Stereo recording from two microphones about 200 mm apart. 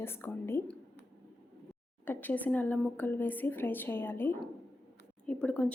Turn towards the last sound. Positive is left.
turn(degrees=5)  # may be behind; listen again after turning